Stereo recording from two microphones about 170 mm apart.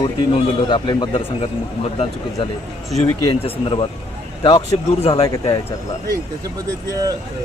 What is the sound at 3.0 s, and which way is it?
A man's voice, 30° left (ahead or behind).